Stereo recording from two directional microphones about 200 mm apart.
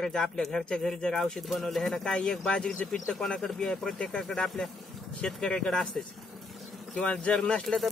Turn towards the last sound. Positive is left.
turn(degrees=0)  # may be behind; listen again after turning